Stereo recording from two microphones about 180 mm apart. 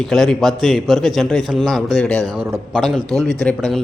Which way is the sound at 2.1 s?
20° right (ahead or behind).